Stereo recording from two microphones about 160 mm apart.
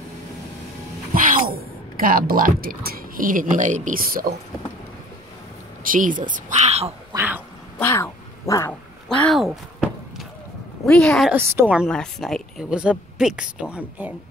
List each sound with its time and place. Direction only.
1.1 s a sound: 55° right (ahead or behind)
1.5 s a woman's voice: 65° right (ahead or behind)
5.9 s a woman's voice: 55° right (ahead or behind)
7.2 s dog: 10° right (ahead or behind)
7.8 s cat: 15° left (ahead or behind)
9.2 s a sound: centre (ahead or behind)
10.9 s a woman's voice: 5° left (ahead or behind)
11.3 s a woman's voice: 10° right (ahead or behind)
11.9 s a woman's voice: 5° left (ahead or behind)